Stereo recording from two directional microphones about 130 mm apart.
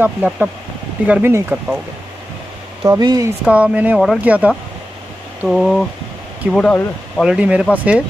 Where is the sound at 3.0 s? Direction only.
30° right (ahead or behind).